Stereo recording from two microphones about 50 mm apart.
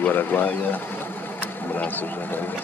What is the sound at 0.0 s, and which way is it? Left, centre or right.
Speech, left.